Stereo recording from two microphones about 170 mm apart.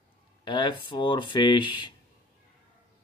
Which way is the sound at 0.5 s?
25° left (ahead or behind).